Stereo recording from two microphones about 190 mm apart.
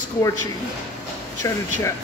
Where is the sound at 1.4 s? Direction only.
15° left (ahead or behind).